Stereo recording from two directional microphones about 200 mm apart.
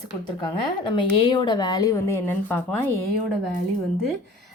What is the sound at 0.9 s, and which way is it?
Speech, 25° left (ahead or behind).